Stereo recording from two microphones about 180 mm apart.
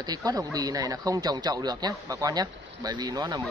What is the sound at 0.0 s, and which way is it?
Speech, 20° right (ahead or behind).